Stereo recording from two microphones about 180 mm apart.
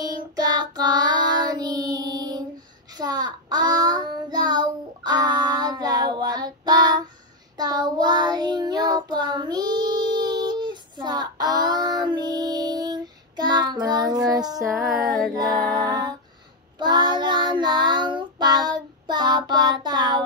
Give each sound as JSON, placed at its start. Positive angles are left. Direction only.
{"t": 0.0, "sound": "child singing", "side_deg": -20}
{"t": 14.6, "sound": "music", "side_deg": 0}
{"t": 15.9, "sound": "a sound", "side_deg": -20}
{"t": 16.7, "sound": "child singing", "side_deg": -25}